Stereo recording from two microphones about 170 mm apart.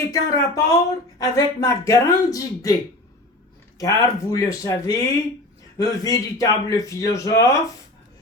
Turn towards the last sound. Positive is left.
turn(degrees=20)  # may be behind; listen again after turning